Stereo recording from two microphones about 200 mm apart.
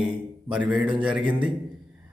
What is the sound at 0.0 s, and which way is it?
A man's voice, 5° right (ahead or behind).